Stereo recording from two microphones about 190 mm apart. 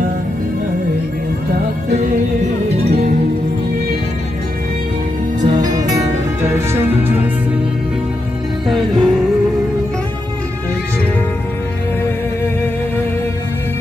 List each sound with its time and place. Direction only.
2.8 s music: 55° right (ahead or behind)
6.4 s music: 15° right (ahead or behind)
8.6 s music: centre (ahead or behind)